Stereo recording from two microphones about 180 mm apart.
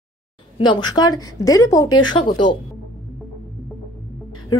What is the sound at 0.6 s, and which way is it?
A woman's voice, 25° left (ahead or behind).